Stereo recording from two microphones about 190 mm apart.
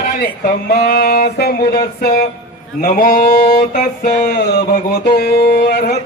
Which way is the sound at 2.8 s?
50° left (ahead or behind).